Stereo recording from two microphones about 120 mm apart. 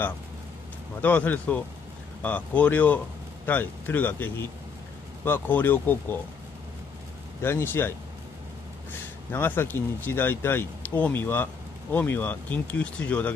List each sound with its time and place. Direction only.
1.0 s speech: 15° left (ahead or behind)
7.4 s speech: 20° left (ahead or behind)
9.3 s speech: 20° left (ahead or behind)